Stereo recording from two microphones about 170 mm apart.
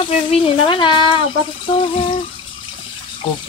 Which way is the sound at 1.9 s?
30° left (ahead or behind).